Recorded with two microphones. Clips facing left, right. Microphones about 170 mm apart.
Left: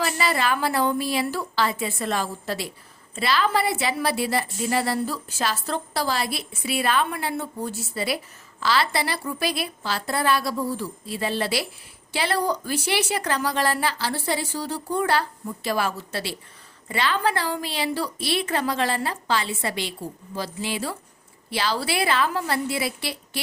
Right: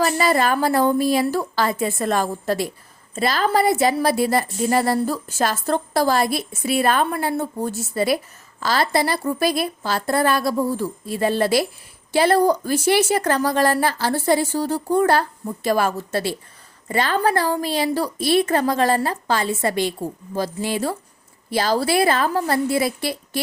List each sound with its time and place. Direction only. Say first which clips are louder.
0.0 s a woman's voice: right 6 dB; 45° right (ahead or behind)